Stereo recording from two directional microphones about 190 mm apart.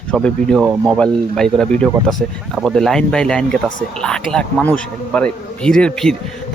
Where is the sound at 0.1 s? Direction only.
5° left (ahead or behind).